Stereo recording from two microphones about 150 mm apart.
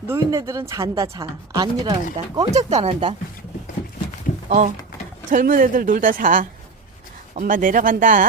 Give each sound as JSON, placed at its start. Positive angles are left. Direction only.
{"t": 0.1, "sound": "speech", "side_deg": -20}
{"t": 2.6, "sound": "speech", "side_deg": -45}
{"t": 4.4, "sound": "a woman's voice", "side_deg": -55}